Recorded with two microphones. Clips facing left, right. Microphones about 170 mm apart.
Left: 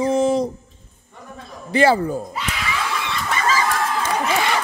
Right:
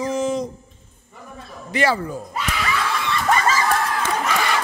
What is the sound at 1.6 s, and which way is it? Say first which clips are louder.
Speech: left 5 dB; 30° left (ahead or behind).